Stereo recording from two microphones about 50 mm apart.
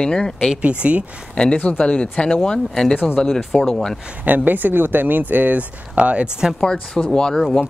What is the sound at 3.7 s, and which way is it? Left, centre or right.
Speech, centre.